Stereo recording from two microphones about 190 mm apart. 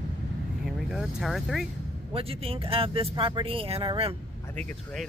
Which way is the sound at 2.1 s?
30° right (ahead or behind).